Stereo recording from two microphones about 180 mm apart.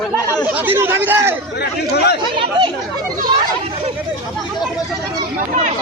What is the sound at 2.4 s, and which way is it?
Speech, 25° right (ahead or behind).